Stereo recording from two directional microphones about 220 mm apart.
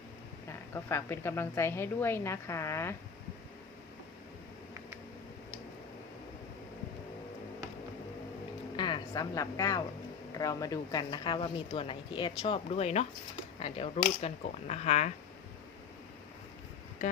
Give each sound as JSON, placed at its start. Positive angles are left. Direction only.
{"t": 0.7, "sound": "a woman's voice", "side_deg": 10}
{"t": 8.7, "sound": "a sound", "side_deg": 20}
{"t": 10.3, "sound": "speech", "side_deg": 15}